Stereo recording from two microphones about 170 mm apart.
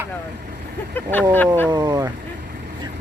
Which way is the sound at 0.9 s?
10° left (ahead or behind).